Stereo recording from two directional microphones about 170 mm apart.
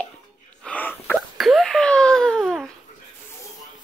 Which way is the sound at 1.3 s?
Centre (ahead or behind).